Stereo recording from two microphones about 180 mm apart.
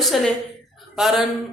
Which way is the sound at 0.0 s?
Centre (ahead or behind).